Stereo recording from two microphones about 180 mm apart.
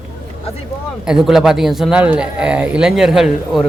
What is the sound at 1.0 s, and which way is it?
Speech, 5° right (ahead or behind).